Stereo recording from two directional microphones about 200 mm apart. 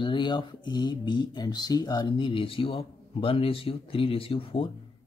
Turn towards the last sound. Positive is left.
turn(degrees=25)  # may be behind; listen again after turning